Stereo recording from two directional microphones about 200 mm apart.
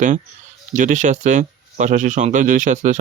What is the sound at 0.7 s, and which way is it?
Speech, 40° right (ahead or behind).